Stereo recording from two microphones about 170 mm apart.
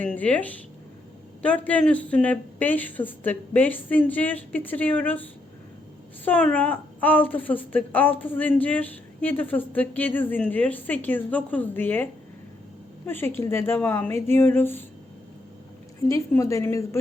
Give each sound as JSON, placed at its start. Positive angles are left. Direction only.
{"t": 0.0, "sound": "a woman's voice", "side_deg": 10}
{"t": 13.1, "sound": "a woman's voice", "side_deg": 15}
{"t": 16.0, "sound": "a woman's voice", "side_deg": 20}